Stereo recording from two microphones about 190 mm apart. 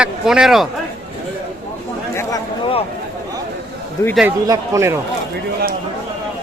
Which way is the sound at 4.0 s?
15° left (ahead or behind).